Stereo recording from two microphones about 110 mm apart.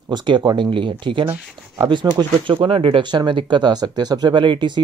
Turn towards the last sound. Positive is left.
turn(degrees=-45)  # may be behind; listen again after turning